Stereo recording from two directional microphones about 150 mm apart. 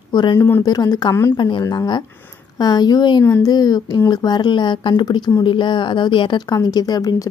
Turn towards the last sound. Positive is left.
turn(degrees=25)  # may be behind; listen again after turning